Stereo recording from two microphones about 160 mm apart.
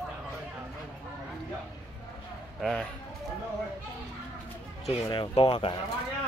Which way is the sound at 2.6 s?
5° left (ahead or behind).